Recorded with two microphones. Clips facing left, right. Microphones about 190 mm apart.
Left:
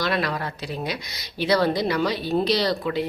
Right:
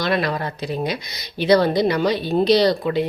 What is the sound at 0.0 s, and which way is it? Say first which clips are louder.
A woman's voice: right 4 dB; 20° right (ahead or behind).